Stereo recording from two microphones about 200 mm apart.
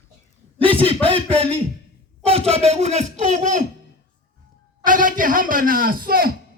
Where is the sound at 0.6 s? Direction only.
25° right (ahead or behind).